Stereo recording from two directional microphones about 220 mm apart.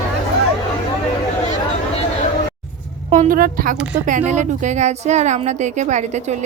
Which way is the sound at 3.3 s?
40° right (ahead or behind).